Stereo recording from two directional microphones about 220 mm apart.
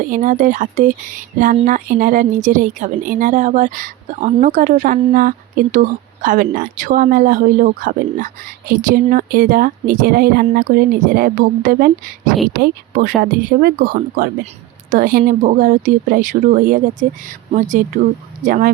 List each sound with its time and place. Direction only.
0.0 s speech: 35° right (ahead or behind)